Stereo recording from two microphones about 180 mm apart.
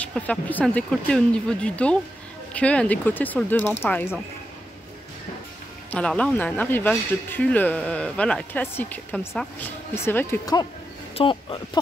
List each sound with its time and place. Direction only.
0.0 s speech: 5° left (ahead or behind)
5.9 s speech: 5° left (ahead or behind)
11.1 s speech: 25° left (ahead or behind)